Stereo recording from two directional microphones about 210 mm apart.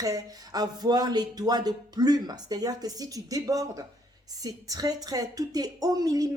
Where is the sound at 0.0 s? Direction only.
15° right (ahead or behind).